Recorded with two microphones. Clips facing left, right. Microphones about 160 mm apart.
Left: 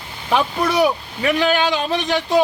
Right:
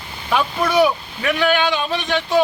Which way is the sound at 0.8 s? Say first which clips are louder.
Even; 35° left (ahead or behind).